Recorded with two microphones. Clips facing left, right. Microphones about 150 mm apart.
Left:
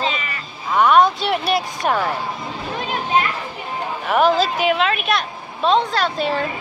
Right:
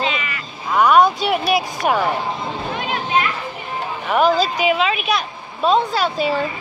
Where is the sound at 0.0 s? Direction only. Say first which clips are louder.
Right 1 dB; 35° left (ahead or behind).